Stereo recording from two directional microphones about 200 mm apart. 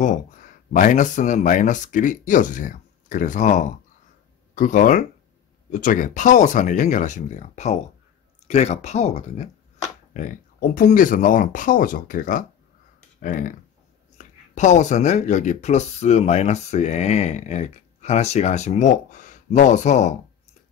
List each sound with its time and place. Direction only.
0.7 s speech: 40° left (ahead or behind)